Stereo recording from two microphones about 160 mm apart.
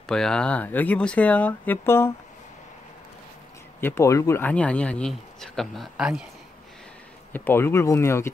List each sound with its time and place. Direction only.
0.0 s speech: 5° left (ahead or behind)
3.8 s speech: 15° left (ahead or behind); by 6.2 s 5° right (ahead or behind)
7.3 s speech: 15° left (ahead or behind)